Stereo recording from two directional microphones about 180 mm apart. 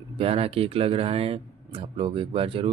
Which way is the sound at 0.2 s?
30° right (ahead or behind).